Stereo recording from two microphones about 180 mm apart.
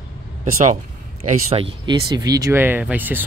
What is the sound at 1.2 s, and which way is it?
Speech, 35° right (ahead or behind).